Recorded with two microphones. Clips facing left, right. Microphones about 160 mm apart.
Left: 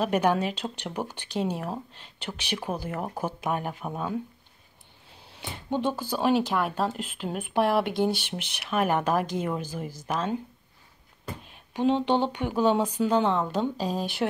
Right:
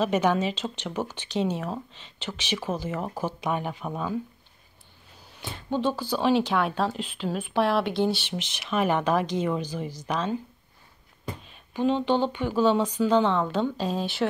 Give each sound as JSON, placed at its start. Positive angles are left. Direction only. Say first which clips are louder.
{"t": 0.0, "sound": "speech", "louder": "right 1 dB", "side_deg": 10}
{"t": 5.4, "sound": "speech", "louder": "right 1 dB", "side_deg": 15}
{"t": 11.8, "sound": "speech", "louder": "even", "side_deg": 20}